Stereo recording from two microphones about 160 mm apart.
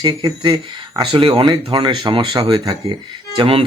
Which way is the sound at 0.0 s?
25° right (ahead or behind).